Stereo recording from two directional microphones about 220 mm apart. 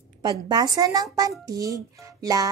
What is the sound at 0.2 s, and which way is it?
Speech, 20° right (ahead or behind).